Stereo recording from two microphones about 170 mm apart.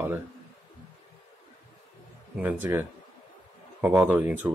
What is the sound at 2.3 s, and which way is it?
Speech, 10° right (ahead or behind).